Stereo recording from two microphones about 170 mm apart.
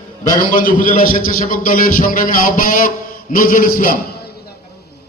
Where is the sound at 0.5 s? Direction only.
55° left (ahead or behind).